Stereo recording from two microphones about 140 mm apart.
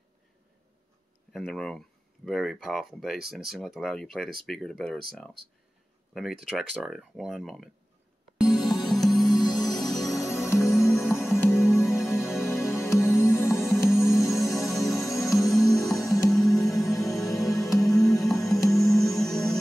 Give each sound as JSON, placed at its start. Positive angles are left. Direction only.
{"t": 1.3, "sound": "speech", "side_deg": 5}
{"t": 6.8, "sound": "speech", "side_deg": 0}
{"t": 8.4, "sound": "music", "side_deg": 0}
{"t": 9.4, "sound": "music", "side_deg": 30}
{"t": 9.8, "sound": "music", "side_deg": 0}
{"t": 10.4, "sound": "music", "side_deg": 20}
{"t": 10.7, "sound": "music", "side_deg": 0}
{"t": 11.3, "sound": "music", "side_deg": 20}
{"t": 11.6, "sound": "music", "side_deg": -5}
{"t": 12.4, "sound": "music", "side_deg": 20}
{"t": 13.8, "sound": "music", "side_deg": 0}